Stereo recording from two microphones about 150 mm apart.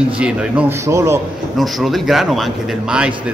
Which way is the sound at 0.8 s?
20° right (ahead or behind).